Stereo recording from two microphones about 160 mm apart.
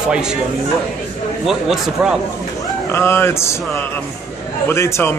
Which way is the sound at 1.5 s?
Centre (ahead or behind).